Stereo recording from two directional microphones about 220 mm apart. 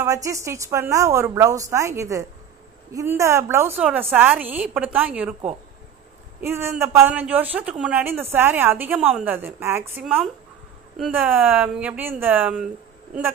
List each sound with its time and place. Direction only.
0.0 s speech: 15° right (ahead or behind)
6.4 s speech: 10° right (ahead or behind)